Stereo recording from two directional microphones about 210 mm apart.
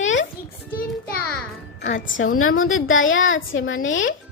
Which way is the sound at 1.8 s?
40° left (ahead or behind).